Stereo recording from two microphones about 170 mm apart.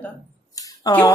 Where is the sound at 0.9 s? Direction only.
20° left (ahead or behind).